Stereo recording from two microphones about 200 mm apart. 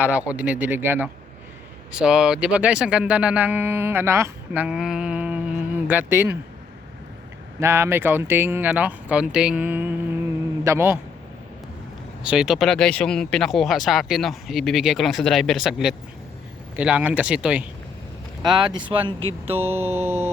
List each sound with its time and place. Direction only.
0.0 s speech: 5° right (ahead or behind)
7.6 s a man's voice: 15° right (ahead or behind)
12.2 s speech: 5° right (ahead or behind)
18.4 s speech: 20° right (ahead or behind)
19.5 s speech: 10° right (ahead or behind)